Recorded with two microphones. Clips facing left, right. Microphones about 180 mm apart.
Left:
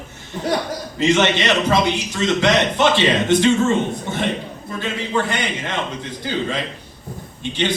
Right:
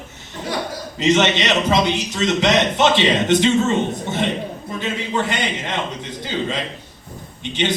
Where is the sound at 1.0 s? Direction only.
20° right (ahead or behind).